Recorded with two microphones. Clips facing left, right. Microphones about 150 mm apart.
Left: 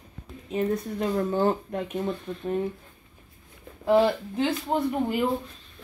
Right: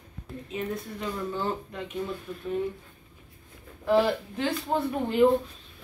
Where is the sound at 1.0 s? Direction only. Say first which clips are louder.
Left 8 dB; 50° left (ahead or behind).